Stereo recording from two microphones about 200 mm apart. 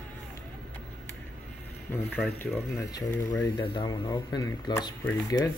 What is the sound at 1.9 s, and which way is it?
Speech, 10° left (ahead or behind).